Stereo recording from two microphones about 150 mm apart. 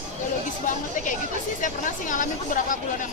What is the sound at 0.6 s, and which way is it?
Speech, 60° left (ahead or behind).